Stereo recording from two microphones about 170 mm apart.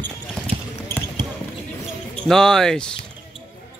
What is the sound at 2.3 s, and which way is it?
Speech, 5° left (ahead or behind).